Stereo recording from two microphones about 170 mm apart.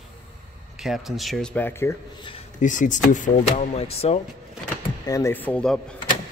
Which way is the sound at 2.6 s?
50° left (ahead or behind).